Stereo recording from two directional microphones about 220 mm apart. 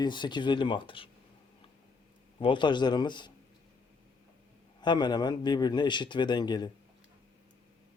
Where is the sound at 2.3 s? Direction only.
20° left (ahead or behind).